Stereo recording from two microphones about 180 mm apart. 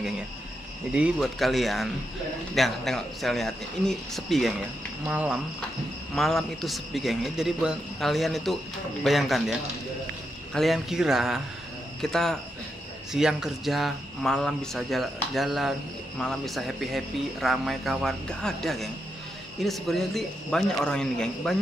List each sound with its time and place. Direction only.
0.9 s speech: 5° right (ahead or behind)